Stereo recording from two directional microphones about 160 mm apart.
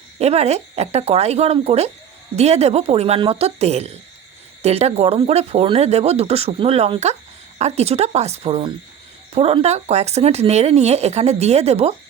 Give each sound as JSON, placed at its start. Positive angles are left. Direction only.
{"t": 0.2, "sound": "speech", "side_deg": -40}